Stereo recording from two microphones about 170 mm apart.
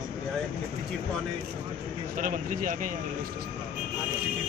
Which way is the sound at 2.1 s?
50° right (ahead or behind).